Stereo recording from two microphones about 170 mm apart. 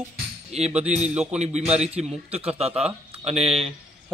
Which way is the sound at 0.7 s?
40° right (ahead or behind).